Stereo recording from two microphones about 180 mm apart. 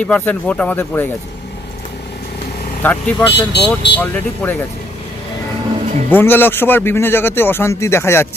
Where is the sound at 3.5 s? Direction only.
70° left (ahead or behind).